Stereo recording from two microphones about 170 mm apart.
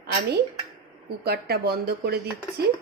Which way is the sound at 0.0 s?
65° right (ahead or behind).